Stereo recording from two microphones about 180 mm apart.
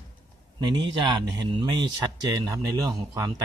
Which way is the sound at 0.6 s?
25° right (ahead or behind).